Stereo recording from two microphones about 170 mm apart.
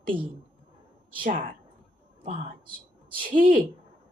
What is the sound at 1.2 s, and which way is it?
Speech, 55° right (ahead or behind).